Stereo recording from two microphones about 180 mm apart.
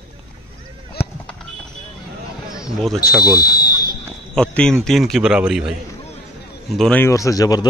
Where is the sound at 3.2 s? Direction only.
25° left (ahead or behind).